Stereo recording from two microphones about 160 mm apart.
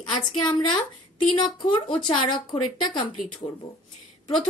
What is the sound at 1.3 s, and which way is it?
A woman's voice, 30° left (ahead or behind).